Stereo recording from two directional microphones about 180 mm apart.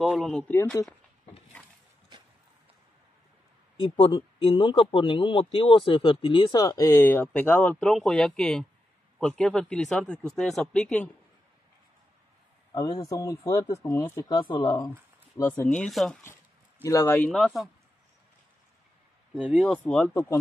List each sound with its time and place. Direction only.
0.0 s speech: 5° right (ahead or behind)
0.6 s speech: 15° left (ahead or behind)
3.8 s speech: 30° left (ahead or behind); by 11.1 s 5° left (ahead or behind)
12.7 s speech: 20° left (ahead or behind); by 16.2 s centre (ahead or behind)
16.8 s speech: 15° left (ahead or behind)
19.3 s speech: 5° right (ahead or behind)
19.6 s speech: 5° left (ahead or behind)
20.1 s speech: 15° left (ahead or behind)